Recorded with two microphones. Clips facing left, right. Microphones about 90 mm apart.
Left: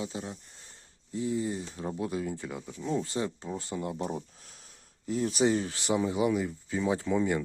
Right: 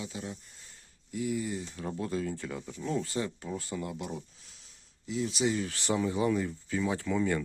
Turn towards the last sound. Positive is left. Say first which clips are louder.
# left 2 dB
turn(degrees=20)  # may be behind; listen again after turning